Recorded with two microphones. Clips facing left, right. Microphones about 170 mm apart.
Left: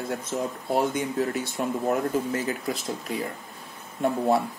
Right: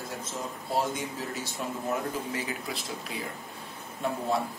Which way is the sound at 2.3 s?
45° left (ahead or behind).